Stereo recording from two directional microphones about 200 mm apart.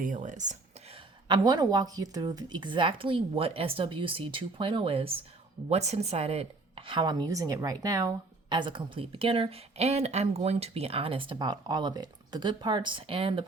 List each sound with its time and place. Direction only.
0.0 s speech: 40° right (ahead or behind)
1.3 s speech: 20° right (ahead or behind)